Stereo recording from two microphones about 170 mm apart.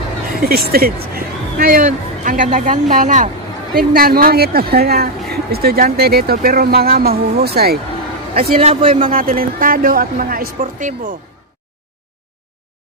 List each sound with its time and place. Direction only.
0.4 s speech: 60° right (ahead or behind)
3.7 s a woman's voice: 60° right (ahead or behind)
8.5 s a man's voice: 40° right (ahead or behind)
9.1 s a woman's voice: 55° right (ahead or behind)